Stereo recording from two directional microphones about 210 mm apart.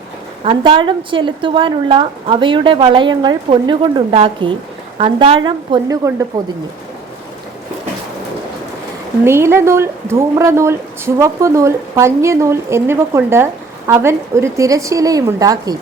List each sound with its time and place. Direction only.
0.4 s a woman's voice: 25° right (ahead or behind)
9.2 s speech: 10° right (ahead or behind)